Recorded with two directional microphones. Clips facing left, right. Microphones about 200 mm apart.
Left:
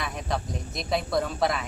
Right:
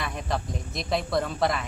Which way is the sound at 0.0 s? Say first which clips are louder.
Even; centre (ahead or behind).